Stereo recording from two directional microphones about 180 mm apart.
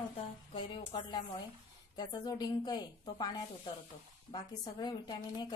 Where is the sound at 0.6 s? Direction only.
30° left (ahead or behind).